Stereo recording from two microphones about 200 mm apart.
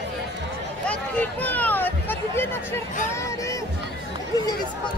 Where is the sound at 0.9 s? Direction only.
5° left (ahead or behind).